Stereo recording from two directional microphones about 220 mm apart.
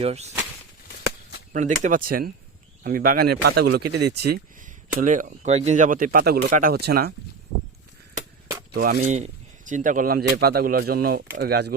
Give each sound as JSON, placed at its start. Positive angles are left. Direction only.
{"t": 0.0, "sound": "speech", "side_deg": -30}
{"t": 1.8, "sound": "speech", "side_deg": -40}
{"t": 8.7, "sound": "speech", "side_deg": -40}